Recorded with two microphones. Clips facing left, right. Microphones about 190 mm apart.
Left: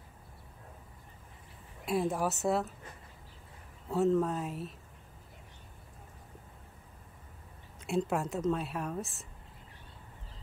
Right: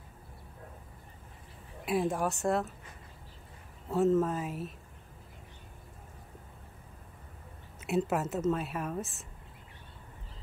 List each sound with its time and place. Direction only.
1.9 s a woman's voice: centre (ahead or behind)
3.9 s a woman's voice: centre (ahead or behind)
7.8 s a woman's voice: 5° right (ahead or behind)